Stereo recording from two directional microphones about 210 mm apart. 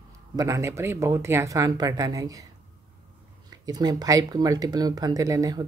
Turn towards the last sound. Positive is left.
turn(degrees=-15)  # may be behind; listen again after turning